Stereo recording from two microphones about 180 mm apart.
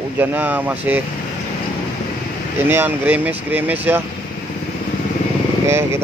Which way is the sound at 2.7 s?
10° right (ahead or behind).